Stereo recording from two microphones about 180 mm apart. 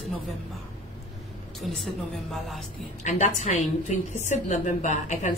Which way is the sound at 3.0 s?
40° left (ahead or behind).